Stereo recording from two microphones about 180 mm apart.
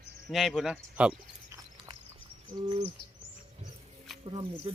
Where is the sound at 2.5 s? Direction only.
25° right (ahead or behind).